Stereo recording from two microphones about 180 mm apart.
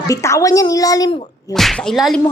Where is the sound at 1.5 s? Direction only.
Centre (ahead or behind).